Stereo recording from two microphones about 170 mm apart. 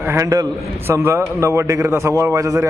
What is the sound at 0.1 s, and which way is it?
A man's voice, 15° right (ahead or behind).